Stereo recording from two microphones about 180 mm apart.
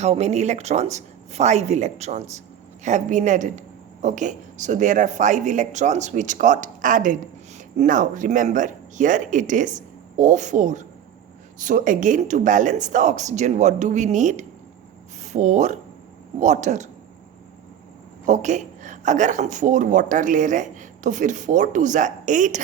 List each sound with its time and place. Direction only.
0.0 s speech: 40° right (ahead or behind)
18.3 s speech: 40° right (ahead or behind)